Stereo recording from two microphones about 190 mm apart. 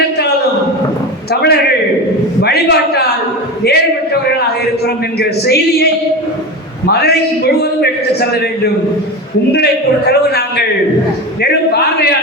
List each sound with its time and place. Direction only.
1.3 s a sound: 60° left (ahead or behind)
5.2 s a man's voice: 60° left (ahead or behind)
10.1 s a man's voice: 55° left (ahead or behind)